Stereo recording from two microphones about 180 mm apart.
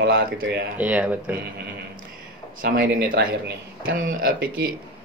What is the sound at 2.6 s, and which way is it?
Speech, 55° right (ahead or behind).